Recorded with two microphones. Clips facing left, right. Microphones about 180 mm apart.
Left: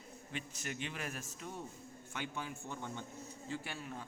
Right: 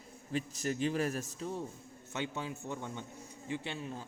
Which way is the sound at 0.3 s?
35° right (ahead or behind).